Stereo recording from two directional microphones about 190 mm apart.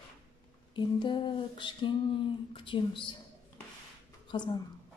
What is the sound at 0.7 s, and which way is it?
A woman's voice, 25° left (ahead or behind).